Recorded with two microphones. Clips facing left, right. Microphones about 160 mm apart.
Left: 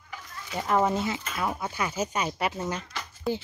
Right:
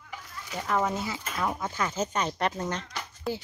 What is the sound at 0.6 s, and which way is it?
Speech, 10° left (ahead or behind).